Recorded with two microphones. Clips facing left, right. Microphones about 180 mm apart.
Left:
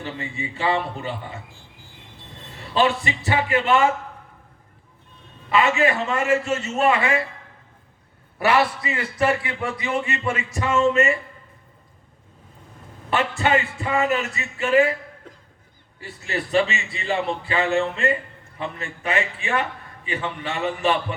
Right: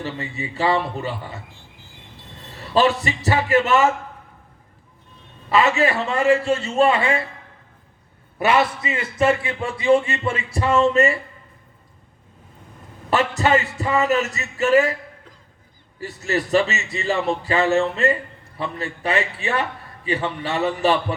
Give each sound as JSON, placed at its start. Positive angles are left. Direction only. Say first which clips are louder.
{"t": 0.0, "sound": "a man's voice", "louder": "right 2 dB", "side_deg": -40}
{"t": 2.7, "sound": "a man's voice", "louder": "right 3 dB", "side_deg": -40}
{"t": 5.5, "sound": "a man's voice", "louder": "right 1 dB", "side_deg": -40}
{"t": 8.4, "sound": "a man's voice", "louder": "right 1 dB", "side_deg": -20}
{"t": 13.1, "sound": "a man's voice", "louder": "right 3 dB", "side_deg": -40}
{"t": 16.0, "sound": "a man's voice", "louder": "right 5 dB", "side_deg": -40}